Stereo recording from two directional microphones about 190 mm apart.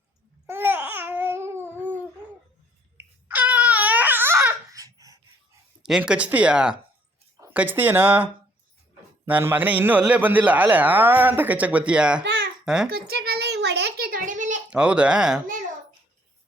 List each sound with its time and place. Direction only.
0.4 s babbling: 10° right (ahead or behind)
3.2 s a sound: 10° right (ahead or behind)
5.8 s speech: 5° right (ahead or behind)
12.2 s babbling: 80° right
12.6 s a child's voice: 5° right (ahead or behind)
12.9 s a sound: 55° right (ahead or behind)
14.7 s speech: 5° right (ahead or behind)